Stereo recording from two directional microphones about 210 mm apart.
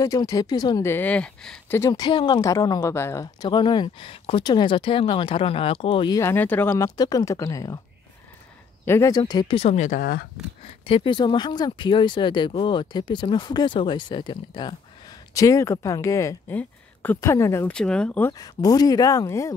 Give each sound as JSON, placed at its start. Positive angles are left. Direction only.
{"t": 0.0, "sound": "speech", "side_deg": 15}
{"t": 1.8, "sound": "speech", "side_deg": 20}
{"t": 8.8, "sound": "speech", "side_deg": 15}
{"t": 10.6, "sound": "speech", "side_deg": 25}